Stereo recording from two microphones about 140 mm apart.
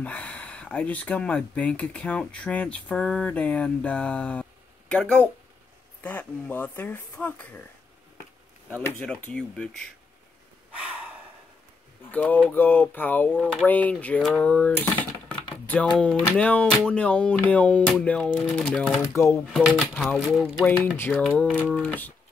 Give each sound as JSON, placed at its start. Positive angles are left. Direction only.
{"t": 0.0, "sound": "speech", "side_deg": 10}
{"t": 8.7, "sound": "speech", "side_deg": 10}
{"t": 12.1, "sound": "speech", "side_deg": 10}
{"t": 19.1, "sound": "speech", "side_deg": 20}
{"t": 19.5, "sound": "speech", "side_deg": 0}
{"t": 21.5, "sound": "speech", "side_deg": 10}